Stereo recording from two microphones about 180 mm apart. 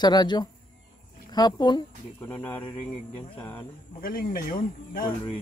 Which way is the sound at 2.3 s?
10° left (ahead or behind).